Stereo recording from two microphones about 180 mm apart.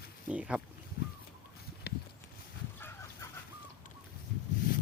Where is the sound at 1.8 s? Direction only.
65° left (ahead or behind).